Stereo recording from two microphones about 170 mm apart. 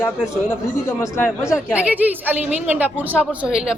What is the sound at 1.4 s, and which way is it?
A woman's voice, 5° right (ahead or behind).